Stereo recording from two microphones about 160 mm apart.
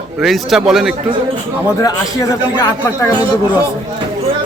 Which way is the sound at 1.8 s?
20° left (ahead or behind).